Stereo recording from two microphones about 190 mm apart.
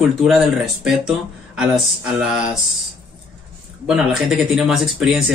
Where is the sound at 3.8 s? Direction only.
5° right (ahead or behind).